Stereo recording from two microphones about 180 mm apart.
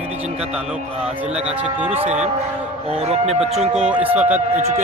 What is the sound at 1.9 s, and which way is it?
Speech, 35° right (ahead or behind).